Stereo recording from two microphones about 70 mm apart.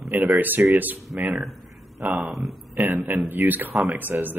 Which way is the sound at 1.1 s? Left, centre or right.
Centre.